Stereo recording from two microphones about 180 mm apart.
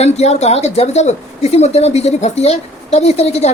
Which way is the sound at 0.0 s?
35° left (ahead or behind).